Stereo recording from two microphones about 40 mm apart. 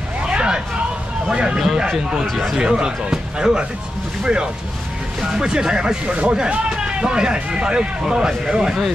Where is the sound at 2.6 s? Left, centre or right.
Right.